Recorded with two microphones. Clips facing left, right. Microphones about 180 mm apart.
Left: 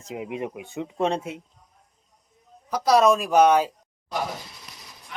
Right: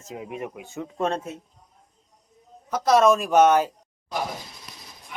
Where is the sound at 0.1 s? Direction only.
20° left (ahead or behind).